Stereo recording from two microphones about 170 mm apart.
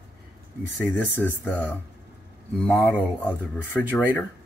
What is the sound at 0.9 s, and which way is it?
Speech, 10° left (ahead or behind).